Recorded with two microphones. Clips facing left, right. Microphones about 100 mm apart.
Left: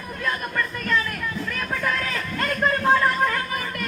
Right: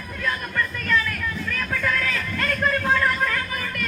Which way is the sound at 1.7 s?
20° left (ahead or behind).